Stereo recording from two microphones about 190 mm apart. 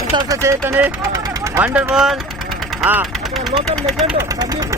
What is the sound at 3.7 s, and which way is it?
Speech, centre (ahead or behind).